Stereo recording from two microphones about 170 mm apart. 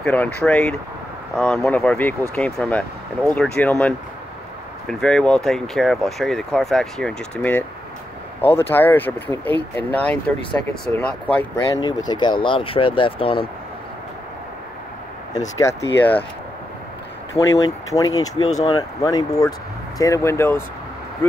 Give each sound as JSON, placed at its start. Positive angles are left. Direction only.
{"t": 0.0, "sound": "speech", "side_deg": 10}
{"t": 15.5, "sound": "speech", "side_deg": 15}
{"t": 17.3, "sound": "speech", "side_deg": 20}